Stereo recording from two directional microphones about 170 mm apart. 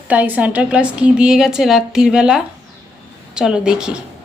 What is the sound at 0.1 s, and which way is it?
Speech, 10° right (ahead or behind).